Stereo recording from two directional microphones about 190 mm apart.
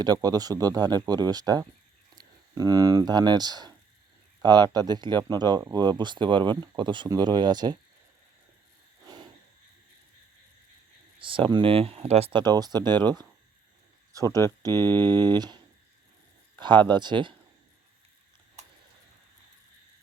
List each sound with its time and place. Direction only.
0.0 s speech: 20° right (ahead or behind)
9.0 s a sound: 20° right (ahead or behind)
11.2 s speech: 25° right (ahead or behind)
14.3 s speech: 15° left (ahead or behind)
15.4 s speech: 20° right (ahead or behind)